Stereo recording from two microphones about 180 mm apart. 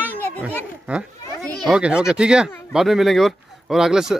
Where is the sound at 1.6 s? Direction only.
5° right (ahead or behind).